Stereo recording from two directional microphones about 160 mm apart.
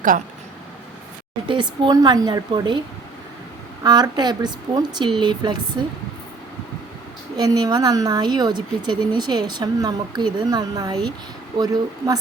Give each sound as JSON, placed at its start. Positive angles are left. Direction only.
{"t": 1.5, "sound": "a woman's voice", "side_deg": -30}
{"t": 3.8, "sound": "a woman's voice", "side_deg": -25}
{"t": 7.3, "sound": "a woman's voice", "side_deg": -25}